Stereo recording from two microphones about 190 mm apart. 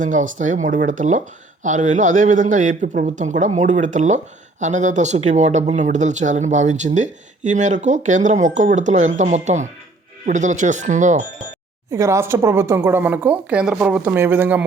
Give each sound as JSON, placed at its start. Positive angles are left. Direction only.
{"t": 0.0, "sound": "speech", "side_deg": -40}
{"t": 11.9, "sound": "a woman's voice", "side_deg": -15}